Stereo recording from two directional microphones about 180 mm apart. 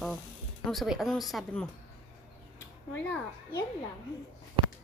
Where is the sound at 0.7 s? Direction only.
Centre (ahead or behind).